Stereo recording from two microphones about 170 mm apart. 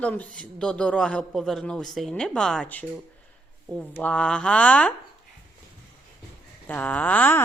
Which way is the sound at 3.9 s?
10° left (ahead or behind).